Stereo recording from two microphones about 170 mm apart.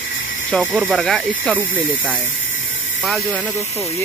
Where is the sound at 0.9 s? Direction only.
5° left (ahead or behind).